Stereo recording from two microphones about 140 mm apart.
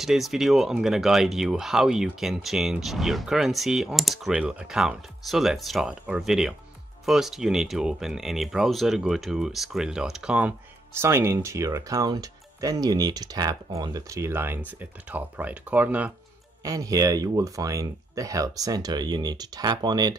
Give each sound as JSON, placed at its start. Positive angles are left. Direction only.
{"t": 0.0, "sound": "speech", "side_deg": 0}
{"t": 10.9, "sound": "speech", "side_deg": -20}
{"t": 16.6, "sound": "speech", "side_deg": -25}